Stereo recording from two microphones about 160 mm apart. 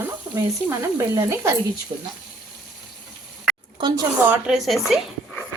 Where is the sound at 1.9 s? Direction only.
30° right (ahead or behind).